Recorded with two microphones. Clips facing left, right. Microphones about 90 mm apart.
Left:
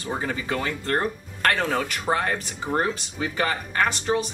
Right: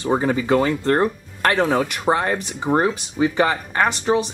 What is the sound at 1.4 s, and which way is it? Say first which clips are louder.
Speech: right 5 dB; 15° right (ahead or behind).